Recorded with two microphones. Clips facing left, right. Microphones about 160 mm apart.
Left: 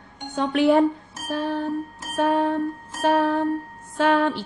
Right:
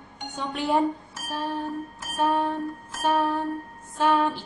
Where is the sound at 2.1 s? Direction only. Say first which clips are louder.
Left 4 dB; 70° left (ahead or behind).